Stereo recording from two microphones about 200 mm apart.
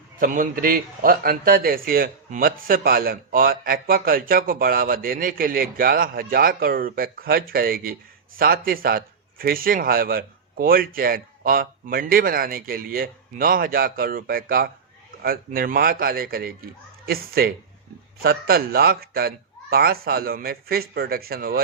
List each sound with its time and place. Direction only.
0.2 s a man's voice: 45° right (ahead or behind)